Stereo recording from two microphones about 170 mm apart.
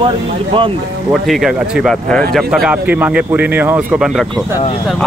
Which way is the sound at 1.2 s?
Centre (ahead or behind).